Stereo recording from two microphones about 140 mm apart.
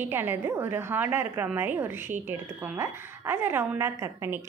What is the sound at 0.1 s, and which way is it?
A woman's voice, 15° right (ahead or behind).